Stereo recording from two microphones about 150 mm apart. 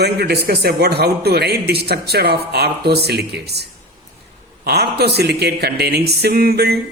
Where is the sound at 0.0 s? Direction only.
90° right.